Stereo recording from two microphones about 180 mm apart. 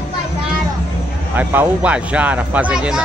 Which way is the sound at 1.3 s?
10° right (ahead or behind).